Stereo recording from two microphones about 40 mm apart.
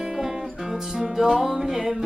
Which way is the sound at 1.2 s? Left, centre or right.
Centre.